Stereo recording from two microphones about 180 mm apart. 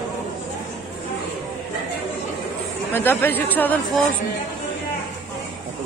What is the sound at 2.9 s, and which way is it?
Speech, 10° left (ahead or behind).